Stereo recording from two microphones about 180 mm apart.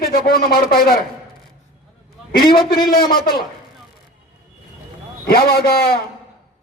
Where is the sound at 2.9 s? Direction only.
55° left (ahead or behind).